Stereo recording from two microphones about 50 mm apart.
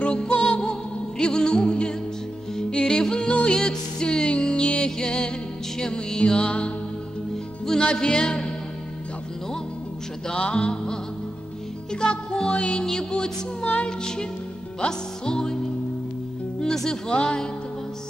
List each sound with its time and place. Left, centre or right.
0.0 s music: left
7.8 s music: centre
10.2 s music: left
16.7 s music: centre